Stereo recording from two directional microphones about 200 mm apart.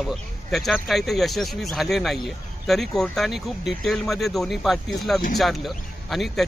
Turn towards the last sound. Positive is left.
turn(degrees=0)  # may be behind; listen again after turning